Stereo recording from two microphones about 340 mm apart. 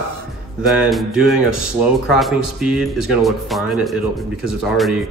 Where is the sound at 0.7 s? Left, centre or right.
Centre.